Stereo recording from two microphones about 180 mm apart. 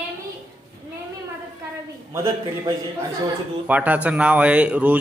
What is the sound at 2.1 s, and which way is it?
Speech, 15° right (ahead or behind).